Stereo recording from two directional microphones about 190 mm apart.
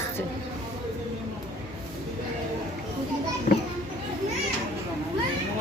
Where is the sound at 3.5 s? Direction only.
45° left (ahead or behind).